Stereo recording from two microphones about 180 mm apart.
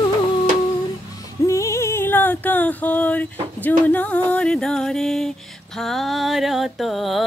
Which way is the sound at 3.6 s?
10° left (ahead or behind).